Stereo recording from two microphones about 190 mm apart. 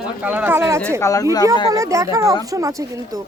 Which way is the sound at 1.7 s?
15° right (ahead or behind).